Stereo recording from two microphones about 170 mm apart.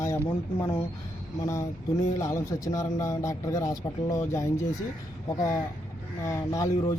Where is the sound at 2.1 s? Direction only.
20° left (ahead or behind).